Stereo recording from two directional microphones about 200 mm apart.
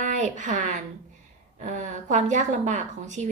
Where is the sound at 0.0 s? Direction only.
40° right (ahead or behind).